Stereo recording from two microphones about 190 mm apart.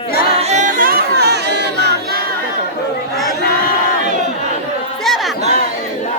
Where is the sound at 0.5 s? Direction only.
45° right (ahead or behind); by 2.0 s 60° right (ahead or behind).